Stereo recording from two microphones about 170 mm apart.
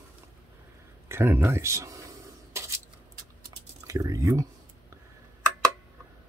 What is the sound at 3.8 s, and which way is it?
Speech, 20° right (ahead or behind).